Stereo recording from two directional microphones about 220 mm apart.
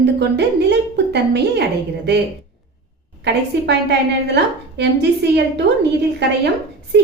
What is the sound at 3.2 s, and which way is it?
Speech, 50° right (ahead or behind).